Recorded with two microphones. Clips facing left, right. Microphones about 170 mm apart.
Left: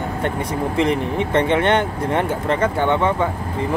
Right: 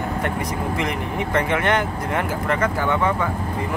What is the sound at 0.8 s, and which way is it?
Speech, 30° left (ahead or behind).